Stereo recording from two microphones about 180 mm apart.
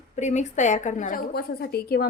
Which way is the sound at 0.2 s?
40° left (ahead or behind).